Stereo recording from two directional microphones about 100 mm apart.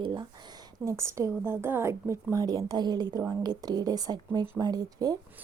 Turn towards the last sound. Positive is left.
turn(degrees=-40)  # may be behind; listen again after turning